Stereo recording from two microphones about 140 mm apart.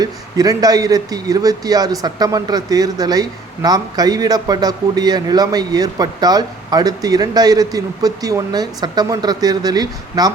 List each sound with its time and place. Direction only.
0.0 s speech: 25° right (ahead or behind)